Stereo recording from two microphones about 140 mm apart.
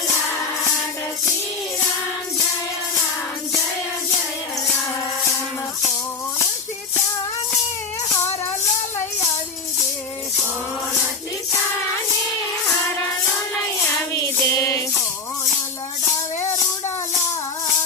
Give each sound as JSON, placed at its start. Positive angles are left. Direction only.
{"t": 14.1, "sound": "music", "side_deg": 25}
{"t": 16.0, "sound": "music", "side_deg": 20}